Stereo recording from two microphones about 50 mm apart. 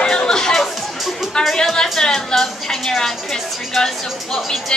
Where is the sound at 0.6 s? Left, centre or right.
Centre.